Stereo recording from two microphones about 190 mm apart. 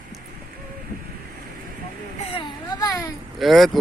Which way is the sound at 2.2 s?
30° left (ahead or behind).